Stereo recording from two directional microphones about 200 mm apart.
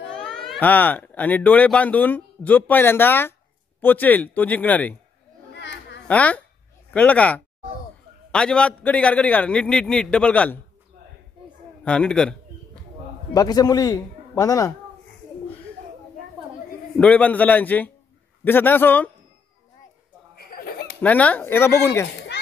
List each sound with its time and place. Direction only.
0.1 s a man's voice: 5° left (ahead or behind)
5.6 s children playing: 60° left (ahead or behind)
6.0 s a man's voice: 5° left (ahead or behind)
11.8 s a man's voice: 5° left (ahead or behind)
13.3 s a man's voice: 20° left (ahead or behind)
16.9 s a man's voice: 5° left (ahead or behind)
20.3 s a sound: 45° left (ahead or behind)
21.0 s a man's voice: 5° left (ahead or behind)